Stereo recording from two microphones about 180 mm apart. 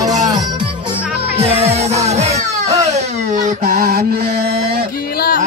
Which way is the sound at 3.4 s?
45° right (ahead or behind).